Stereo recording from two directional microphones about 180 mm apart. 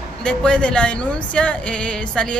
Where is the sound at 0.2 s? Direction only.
5° left (ahead or behind).